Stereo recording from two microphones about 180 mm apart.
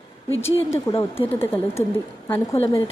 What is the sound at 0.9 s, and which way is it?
Speech, 30° left (ahead or behind).